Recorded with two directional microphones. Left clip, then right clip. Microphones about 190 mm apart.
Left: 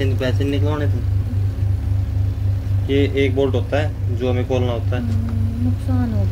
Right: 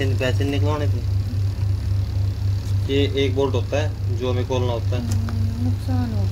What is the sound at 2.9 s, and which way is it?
A man's voice, 15° left (ahead or behind).